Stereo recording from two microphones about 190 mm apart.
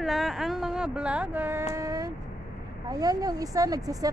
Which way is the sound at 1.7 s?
15° right (ahead or behind).